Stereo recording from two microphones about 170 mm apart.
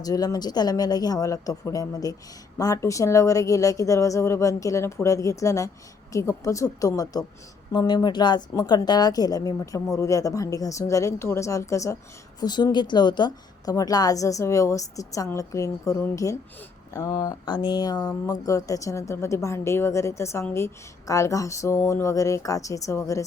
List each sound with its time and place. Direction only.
0.0 s a woman's voice: 20° left (ahead or behind)